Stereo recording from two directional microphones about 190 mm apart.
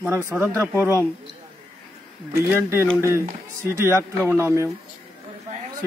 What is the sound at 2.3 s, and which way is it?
A man's voice, 15° right (ahead or behind).